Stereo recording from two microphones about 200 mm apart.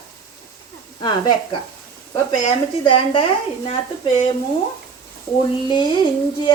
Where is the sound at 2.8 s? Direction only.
25° left (ahead or behind).